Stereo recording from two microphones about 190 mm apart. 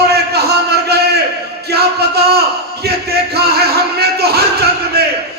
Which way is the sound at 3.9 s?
55° right (ahead or behind).